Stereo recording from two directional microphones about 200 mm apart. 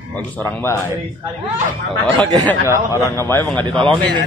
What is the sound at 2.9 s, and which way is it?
Speech, 15° left (ahead or behind).